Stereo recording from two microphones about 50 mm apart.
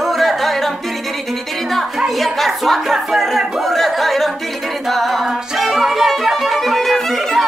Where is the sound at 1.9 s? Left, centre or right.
Centre.